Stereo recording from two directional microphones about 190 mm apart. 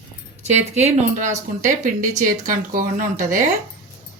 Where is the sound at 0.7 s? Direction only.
35° right (ahead or behind).